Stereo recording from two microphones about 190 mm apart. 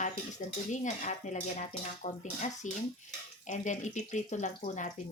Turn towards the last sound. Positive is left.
turn(degrees=40)  # may be behind; listen again after turning